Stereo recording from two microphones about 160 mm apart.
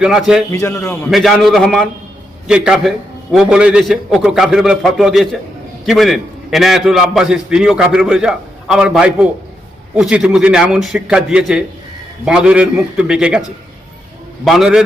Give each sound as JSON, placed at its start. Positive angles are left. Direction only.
{"t": 0.0, "sound": "a man's voice", "side_deg": -5}
{"t": 0.5, "sound": "a man's voice", "side_deg": 20}
{"t": 1.1, "sound": "a man's voice", "side_deg": 0}
{"t": 14.4, "sound": "a man's voice", "side_deg": 0}